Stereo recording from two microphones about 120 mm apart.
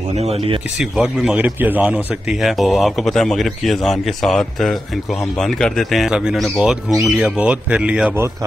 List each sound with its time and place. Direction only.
0.1 s speech: 60° right (ahead or behind)
0.7 s speech: 5° right (ahead or behind)
2.2 s a man's voice: centre (ahead or behind)